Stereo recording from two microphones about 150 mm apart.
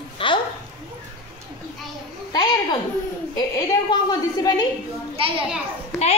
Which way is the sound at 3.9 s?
30° left (ahead or behind).